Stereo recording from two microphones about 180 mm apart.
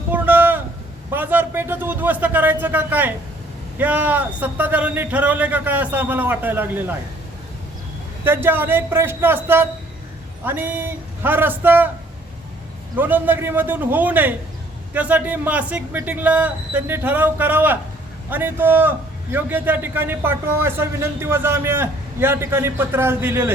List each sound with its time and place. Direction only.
0.1 s a sound: 10° right (ahead or behind)
1.1 s a man's voice: 10° right (ahead or behind)
8.2 s a man's voice: 10° right (ahead or behind)
13.0 s a man's voice: 10° right (ahead or behind)